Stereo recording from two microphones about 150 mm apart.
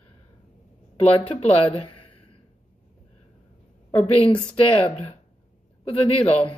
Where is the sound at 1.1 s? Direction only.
35° left (ahead or behind).